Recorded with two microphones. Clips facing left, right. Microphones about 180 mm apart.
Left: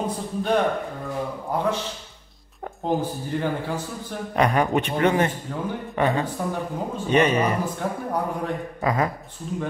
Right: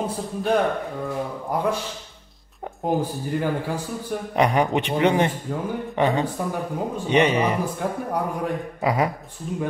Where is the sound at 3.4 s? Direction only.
10° right (ahead or behind).